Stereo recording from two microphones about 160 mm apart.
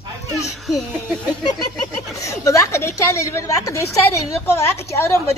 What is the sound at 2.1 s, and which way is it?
A woman's voice, 20° left (ahead or behind).